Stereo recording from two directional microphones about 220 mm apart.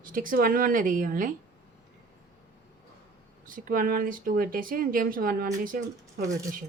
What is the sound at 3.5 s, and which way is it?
Speech, 40° right (ahead or behind).